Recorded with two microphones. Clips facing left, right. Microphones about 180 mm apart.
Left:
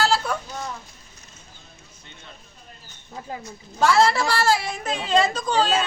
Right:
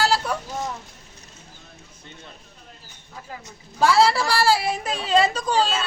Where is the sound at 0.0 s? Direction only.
10° right (ahead or behind).